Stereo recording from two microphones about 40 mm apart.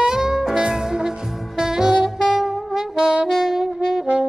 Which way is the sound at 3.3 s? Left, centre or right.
Centre.